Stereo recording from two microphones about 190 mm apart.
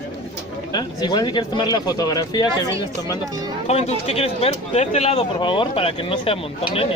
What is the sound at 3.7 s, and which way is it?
Speech, 35° left (ahead or behind).